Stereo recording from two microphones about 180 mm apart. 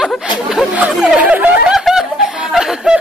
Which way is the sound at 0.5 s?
5° right (ahead or behind).